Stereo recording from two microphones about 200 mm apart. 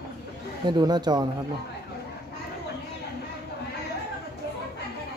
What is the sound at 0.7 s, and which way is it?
Speech, 20° right (ahead or behind).